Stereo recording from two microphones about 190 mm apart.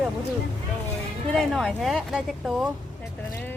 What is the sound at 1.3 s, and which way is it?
Speech, centre (ahead or behind).